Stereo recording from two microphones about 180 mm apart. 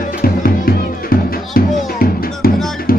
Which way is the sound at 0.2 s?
55° left (ahead or behind).